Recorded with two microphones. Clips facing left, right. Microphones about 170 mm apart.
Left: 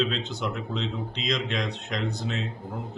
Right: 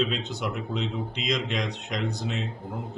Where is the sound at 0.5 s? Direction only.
5° right (ahead or behind).